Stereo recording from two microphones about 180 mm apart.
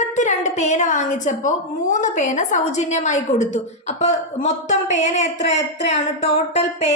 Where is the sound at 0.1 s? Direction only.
40° left (ahead or behind).